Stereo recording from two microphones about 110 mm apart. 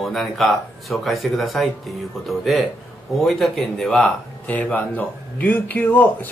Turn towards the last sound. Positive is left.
turn(degrees=20)  # may be behind; listen again after turning